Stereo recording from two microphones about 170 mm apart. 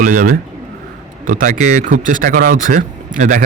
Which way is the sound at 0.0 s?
50° right (ahead or behind).